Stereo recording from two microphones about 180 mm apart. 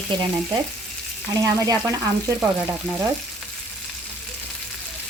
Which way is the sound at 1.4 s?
20° right (ahead or behind).